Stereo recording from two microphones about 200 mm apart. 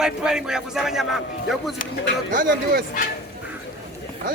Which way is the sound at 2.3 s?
45° right (ahead or behind).